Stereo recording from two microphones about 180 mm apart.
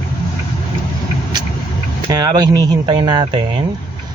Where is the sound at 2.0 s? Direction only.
20° right (ahead or behind).